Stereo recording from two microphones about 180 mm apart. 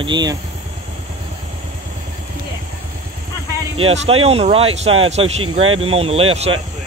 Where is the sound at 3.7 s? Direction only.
35° right (ahead or behind).